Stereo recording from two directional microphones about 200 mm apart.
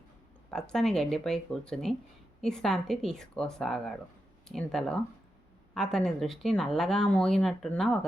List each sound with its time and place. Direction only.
0.5 s speech: 5° left (ahead or behind)